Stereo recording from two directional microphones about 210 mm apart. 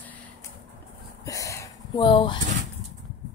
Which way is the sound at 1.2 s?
15° left (ahead or behind).